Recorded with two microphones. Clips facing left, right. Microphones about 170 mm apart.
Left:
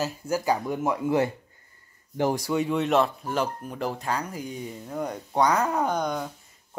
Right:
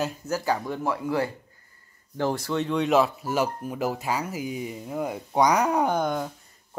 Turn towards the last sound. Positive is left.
turn(degrees=-5)  # may be behind; listen again after turning